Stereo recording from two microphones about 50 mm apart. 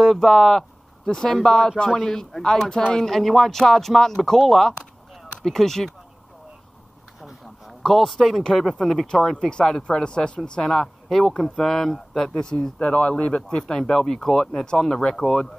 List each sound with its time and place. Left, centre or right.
0.0 s speech: centre
3.1 s speech: centre
7.2 s a sound: centre
7.8 s speech: centre; by 13.7 s left
13.7 s speech: centre